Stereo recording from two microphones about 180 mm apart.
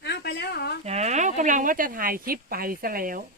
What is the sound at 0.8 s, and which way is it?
Speech, 35° right (ahead or behind).